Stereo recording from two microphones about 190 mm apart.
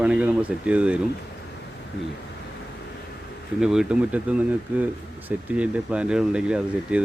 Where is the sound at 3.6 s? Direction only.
5° right (ahead or behind).